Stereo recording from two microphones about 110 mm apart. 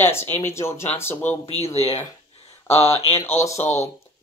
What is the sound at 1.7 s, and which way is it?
Speech, 70° left (ahead or behind).